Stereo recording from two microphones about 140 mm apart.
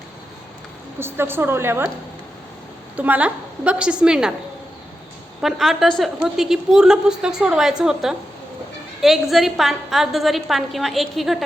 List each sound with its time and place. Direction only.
0.9 s a woman's voice: 15° right (ahead or behind)
2.9 s a woman's voice: 10° right (ahead or behind)
5.4 s a woman's voice: centre (ahead or behind)